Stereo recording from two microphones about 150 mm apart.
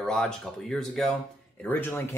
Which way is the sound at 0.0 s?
5° left (ahead or behind).